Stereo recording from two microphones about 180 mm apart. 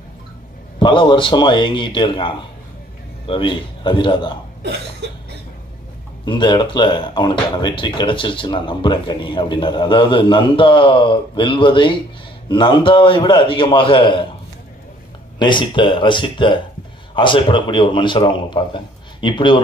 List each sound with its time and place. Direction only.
0.7 s speech: 25° left (ahead or behind)
5.0 s cough: 70° right (ahead or behind)
6.2 s speech: 25° left (ahead or behind)
15.3 s speech: 25° left (ahead or behind)